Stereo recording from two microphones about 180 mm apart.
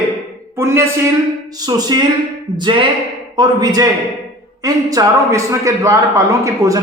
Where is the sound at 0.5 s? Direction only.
15° right (ahead or behind).